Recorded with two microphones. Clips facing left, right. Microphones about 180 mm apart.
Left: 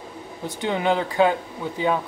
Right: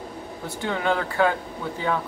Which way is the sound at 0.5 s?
20° left (ahead or behind).